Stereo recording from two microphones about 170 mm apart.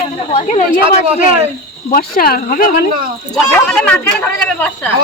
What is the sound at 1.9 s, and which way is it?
Speech, 60° left (ahead or behind).